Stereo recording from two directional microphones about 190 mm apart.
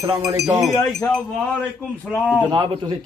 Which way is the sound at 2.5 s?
25° right (ahead or behind).